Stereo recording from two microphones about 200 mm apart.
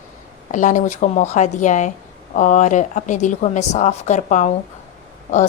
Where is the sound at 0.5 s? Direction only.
40° left (ahead or behind).